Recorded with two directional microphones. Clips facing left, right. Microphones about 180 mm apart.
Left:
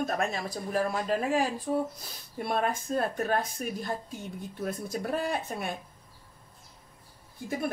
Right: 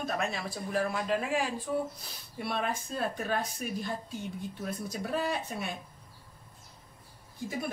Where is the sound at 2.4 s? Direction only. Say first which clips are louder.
Left 4 dB; 50° left (ahead or behind).